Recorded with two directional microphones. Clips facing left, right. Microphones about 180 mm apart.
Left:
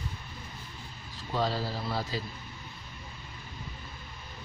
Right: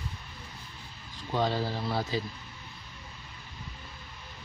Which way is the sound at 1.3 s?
20° right (ahead or behind).